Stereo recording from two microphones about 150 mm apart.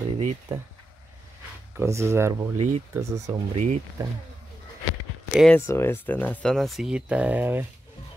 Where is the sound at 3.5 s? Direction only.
45° right (ahead or behind).